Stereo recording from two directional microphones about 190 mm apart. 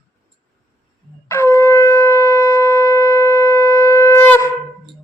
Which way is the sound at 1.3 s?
15° left (ahead or behind).